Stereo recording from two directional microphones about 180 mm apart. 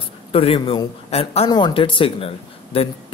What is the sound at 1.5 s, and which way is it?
Speech, 25° left (ahead or behind).